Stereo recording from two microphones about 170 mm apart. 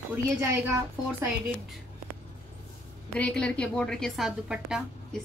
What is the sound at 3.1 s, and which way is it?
A woman's voice, 5° left (ahead or behind).